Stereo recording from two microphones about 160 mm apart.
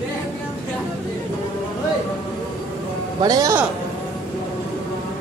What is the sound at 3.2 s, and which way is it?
Speech, 20° right (ahead or behind).